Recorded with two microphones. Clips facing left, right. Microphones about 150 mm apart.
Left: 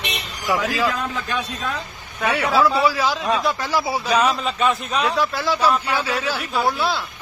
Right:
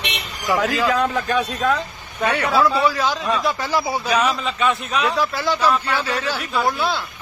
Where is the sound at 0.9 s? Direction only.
65° right (ahead or behind).